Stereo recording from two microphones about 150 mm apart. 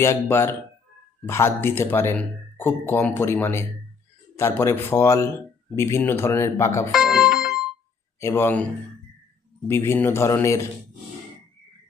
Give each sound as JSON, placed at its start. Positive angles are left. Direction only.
{"t": 0.0, "sound": "speech", "side_deg": 15}
{"t": 6.9, "sound": "music", "side_deg": 0}
{"t": 8.2, "sound": "speech", "side_deg": 15}
{"t": 9.6, "sound": "speech", "side_deg": 15}